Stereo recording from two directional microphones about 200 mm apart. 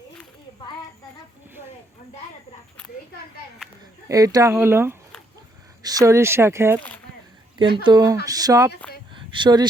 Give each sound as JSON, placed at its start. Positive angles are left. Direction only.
{"t": 4.1, "sound": "speech", "side_deg": -15}
{"t": 7.9, "sound": "speech", "side_deg": -20}
{"t": 9.1, "sound": "a sound", "side_deg": -25}